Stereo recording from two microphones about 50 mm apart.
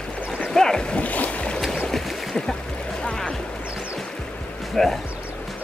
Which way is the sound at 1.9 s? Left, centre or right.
Centre.